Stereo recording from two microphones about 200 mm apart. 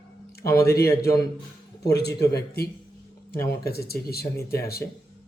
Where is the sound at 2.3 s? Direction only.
50° left (ahead or behind).